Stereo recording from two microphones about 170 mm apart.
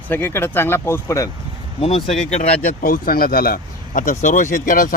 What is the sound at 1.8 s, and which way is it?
Speech, 40° left (ahead or behind).